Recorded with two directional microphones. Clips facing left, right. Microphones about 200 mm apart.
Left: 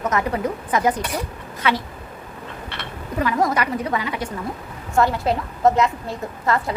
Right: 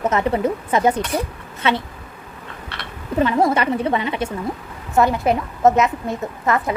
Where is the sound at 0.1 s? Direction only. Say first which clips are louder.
Right 3 dB; 25° right (ahead or behind).